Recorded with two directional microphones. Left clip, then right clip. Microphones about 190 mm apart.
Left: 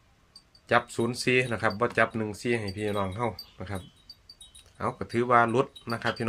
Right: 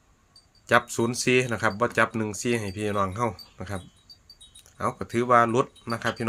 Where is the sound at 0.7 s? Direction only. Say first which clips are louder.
Right 3 dB; 25° right (ahead or behind).